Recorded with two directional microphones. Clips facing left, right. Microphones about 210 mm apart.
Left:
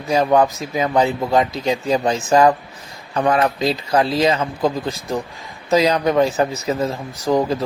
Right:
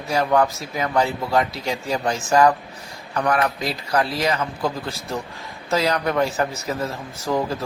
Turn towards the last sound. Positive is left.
turn(degrees=25)  # may be behind; listen again after turning